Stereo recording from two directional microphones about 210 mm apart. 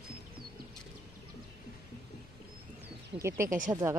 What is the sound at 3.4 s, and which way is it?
Speech, 35° right (ahead or behind).